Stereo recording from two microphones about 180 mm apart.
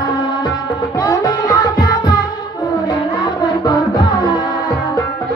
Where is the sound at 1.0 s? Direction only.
20° left (ahead or behind).